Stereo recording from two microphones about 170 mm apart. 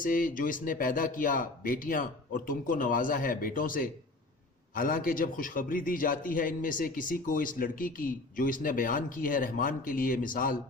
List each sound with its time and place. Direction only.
0.0 s a man's voice: 55° left (ahead or behind)